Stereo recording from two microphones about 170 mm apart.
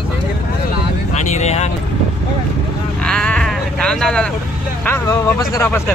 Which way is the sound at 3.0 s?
5° left (ahead or behind).